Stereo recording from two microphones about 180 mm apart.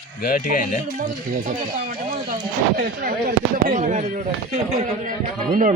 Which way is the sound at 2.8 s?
55° right (ahead or behind).